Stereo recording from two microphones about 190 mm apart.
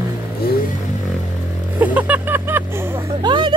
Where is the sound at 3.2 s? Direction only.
25° right (ahead or behind).